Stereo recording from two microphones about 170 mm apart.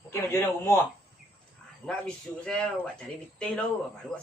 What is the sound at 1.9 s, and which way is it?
A man's voice, 5° left (ahead or behind).